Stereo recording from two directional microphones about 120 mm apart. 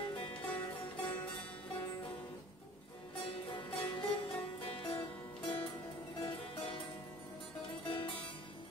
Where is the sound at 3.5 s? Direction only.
45° left (ahead or behind).